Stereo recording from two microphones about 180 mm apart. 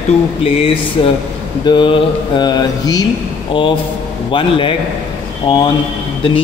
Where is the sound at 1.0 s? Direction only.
30° left (ahead or behind).